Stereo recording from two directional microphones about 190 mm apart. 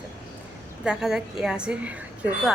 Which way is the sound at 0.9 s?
Centre (ahead or behind).